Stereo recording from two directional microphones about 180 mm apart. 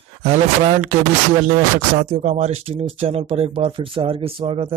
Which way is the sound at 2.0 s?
40° right (ahead or behind).